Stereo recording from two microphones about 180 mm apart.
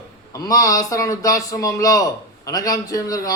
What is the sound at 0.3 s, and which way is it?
A man's voice, 20° left (ahead or behind).